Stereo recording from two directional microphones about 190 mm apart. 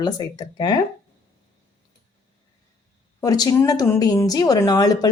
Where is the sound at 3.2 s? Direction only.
20° left (ahead or behind).